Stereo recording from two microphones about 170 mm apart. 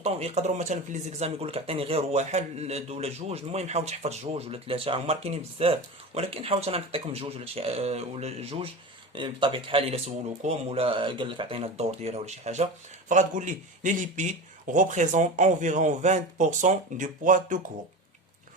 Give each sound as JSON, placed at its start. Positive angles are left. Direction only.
{"t": 0.0, "sound": "a man's voice", "side_deg": -40}